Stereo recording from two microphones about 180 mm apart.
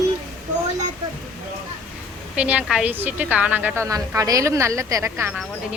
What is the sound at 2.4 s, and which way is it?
A woman's voice, 5° right (ahead or behind).